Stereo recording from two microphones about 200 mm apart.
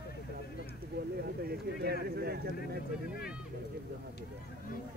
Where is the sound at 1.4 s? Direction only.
50° right (ahead or behind).